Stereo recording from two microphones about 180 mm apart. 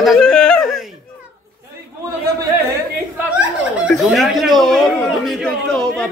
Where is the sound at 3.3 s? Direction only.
5° right (ahead or behind).